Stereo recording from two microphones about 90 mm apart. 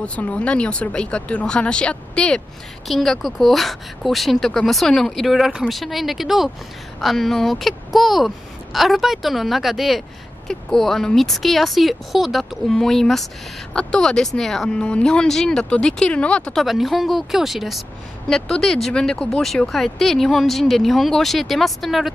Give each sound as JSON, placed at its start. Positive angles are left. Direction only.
{"t": 0.0, "sound": "speech", "side_deg": 15}
{"t": 2.9, "sound": "speech", "side_deg": 0}
{"t": 16.6, "sound": "speech", "side_deg": 0}